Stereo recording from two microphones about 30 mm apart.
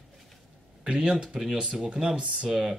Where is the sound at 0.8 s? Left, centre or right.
Centre.